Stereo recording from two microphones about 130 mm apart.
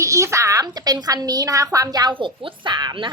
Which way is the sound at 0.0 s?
20° right (ahead or behind).